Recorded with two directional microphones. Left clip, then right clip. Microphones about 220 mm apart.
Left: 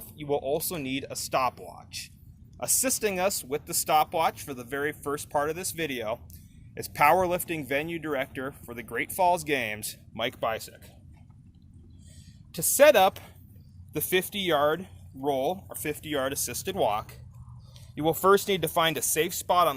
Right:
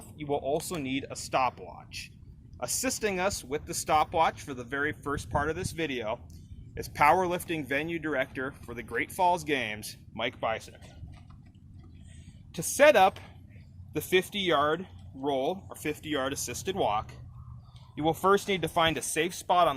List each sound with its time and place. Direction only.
0.2 s speech: 45° left (ahead or behind)
12.5 s speech: 45° left (ahead or behind)